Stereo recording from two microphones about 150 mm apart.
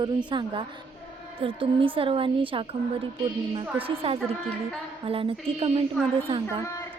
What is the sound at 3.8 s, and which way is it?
Speech, 40° right (ahead or behind).